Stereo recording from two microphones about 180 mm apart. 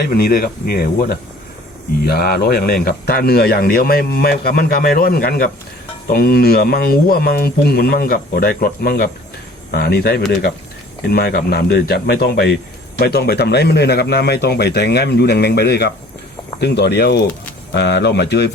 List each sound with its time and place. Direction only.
0.1 s speech: 55° left (ahead or behind)